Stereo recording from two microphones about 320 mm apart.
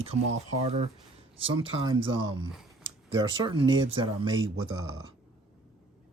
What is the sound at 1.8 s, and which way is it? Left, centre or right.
Speech, centre.